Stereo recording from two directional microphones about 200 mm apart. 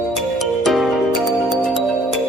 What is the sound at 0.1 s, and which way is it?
Music, centre (ahead or behind).